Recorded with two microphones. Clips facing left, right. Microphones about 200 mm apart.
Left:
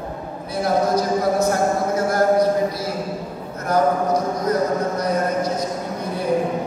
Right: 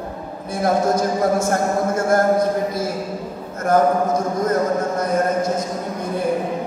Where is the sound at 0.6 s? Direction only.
50° right (ahead or behind).